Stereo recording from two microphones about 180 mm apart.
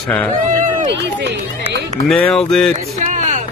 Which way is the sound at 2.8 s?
40° right (ahead or behind).